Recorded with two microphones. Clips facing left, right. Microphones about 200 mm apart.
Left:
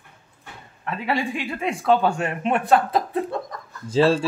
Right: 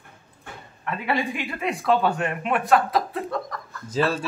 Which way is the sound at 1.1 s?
30° left (ahead or behind).